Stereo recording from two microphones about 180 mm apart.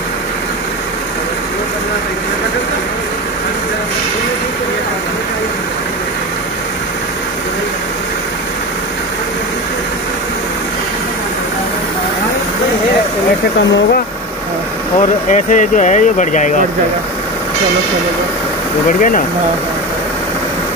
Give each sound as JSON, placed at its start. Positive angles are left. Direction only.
{"t": 15.0, "sound": "speech", "side_deg": 45}
{"t": 18.9, "sound": "speech", "side_deg": 45}